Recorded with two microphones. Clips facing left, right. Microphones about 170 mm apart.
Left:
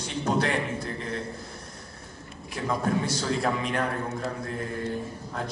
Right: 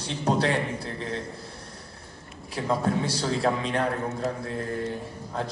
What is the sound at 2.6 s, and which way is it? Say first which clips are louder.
A man's voice: right 1 dB; 30° right (ahead or behind).